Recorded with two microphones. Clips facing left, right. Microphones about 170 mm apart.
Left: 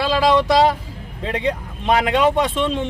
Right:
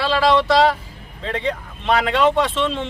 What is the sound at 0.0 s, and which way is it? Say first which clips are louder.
Speech: left 1 dB; 15° left (ahead or behind).